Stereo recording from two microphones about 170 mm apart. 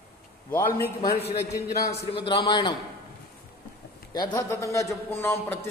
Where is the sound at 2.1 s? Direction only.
30° left (ahead or behind).